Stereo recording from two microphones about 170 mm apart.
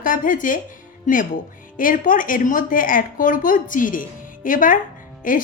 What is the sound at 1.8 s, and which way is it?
A woman's voice, 50° left (ahead or behind).